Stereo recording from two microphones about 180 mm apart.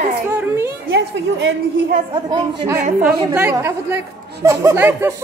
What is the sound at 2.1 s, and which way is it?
Speech, 25° right (ahead or behind).